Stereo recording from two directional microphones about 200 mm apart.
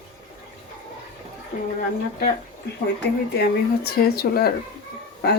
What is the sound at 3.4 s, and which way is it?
Speech, 50° left (ahead or behind).